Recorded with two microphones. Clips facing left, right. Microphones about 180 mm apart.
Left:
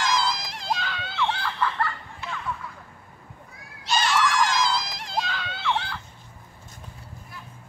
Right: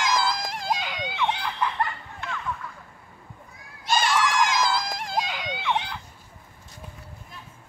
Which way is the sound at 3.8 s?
50° right (ahead or behind).